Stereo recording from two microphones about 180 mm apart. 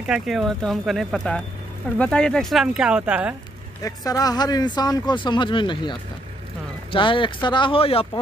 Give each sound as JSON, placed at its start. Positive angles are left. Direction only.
{"t": 0.0, "sound": "speech", "side_deg": 0}
{"t": 3.8, "sound": "speech", "side_deg": 20}